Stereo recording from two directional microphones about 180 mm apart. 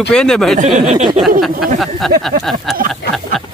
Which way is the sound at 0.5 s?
45° right (ahead or behind).